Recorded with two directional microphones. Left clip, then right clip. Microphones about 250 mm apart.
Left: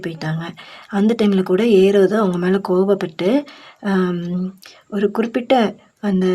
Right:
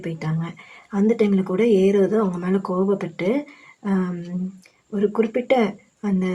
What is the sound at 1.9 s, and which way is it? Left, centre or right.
Speech, left.